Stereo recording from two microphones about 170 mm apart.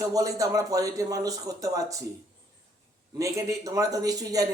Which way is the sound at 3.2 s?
20° right (ahead or behind).